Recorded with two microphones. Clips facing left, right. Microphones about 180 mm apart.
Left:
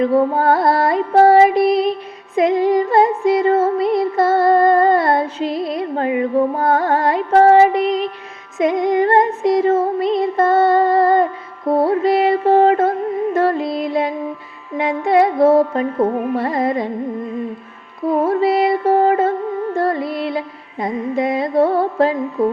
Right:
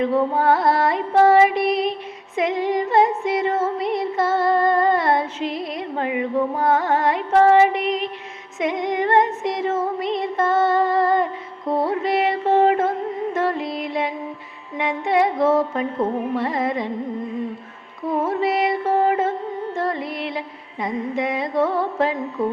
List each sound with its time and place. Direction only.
0.0 s music: 40° left (ahead or behind)
6.7 s carnatic music: 35° left (ahead or behind)
8.5 s music: 35° left (ahead or behind)
18.2 s music: 35° left (ahead or behind)